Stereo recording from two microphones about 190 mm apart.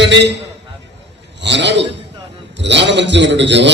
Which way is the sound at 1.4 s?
65° right (ahead or behind).